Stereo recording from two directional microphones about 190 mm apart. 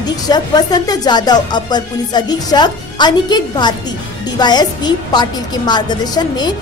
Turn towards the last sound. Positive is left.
turn(degrees=20)  # may be behind; listen again after turning